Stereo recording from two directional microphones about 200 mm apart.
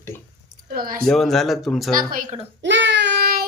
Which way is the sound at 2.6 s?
65° right (ahead or behind).